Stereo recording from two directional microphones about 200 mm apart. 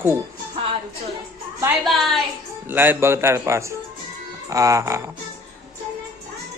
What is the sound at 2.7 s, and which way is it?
Speech, 10° right (ahead or behind).